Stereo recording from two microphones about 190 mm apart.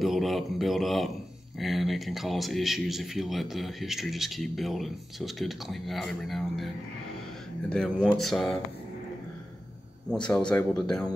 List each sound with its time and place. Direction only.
0.0 s speech: centre (ahead or behind)
7.7 s speech: 5° left (ahead or behind)
10.5 s speech: 5° left (ahead or behind)